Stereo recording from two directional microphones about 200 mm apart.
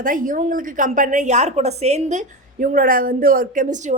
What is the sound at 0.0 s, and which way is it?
Speech, 40° right (ahead or behind).